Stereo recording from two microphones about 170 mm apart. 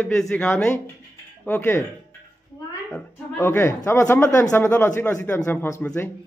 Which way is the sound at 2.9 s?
15° left (ahead or behind).